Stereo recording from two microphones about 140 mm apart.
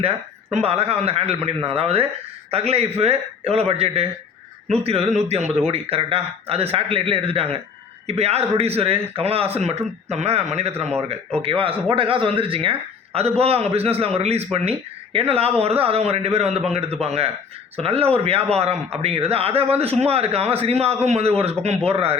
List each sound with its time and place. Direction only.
0.5 s a man's voice: 45° right (ahead or behind)